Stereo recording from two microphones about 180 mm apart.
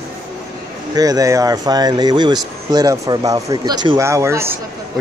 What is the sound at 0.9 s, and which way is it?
Speech, 20° right (ahead or behind).